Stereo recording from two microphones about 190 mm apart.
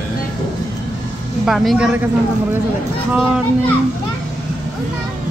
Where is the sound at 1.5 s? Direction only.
Centre (ahead or behind).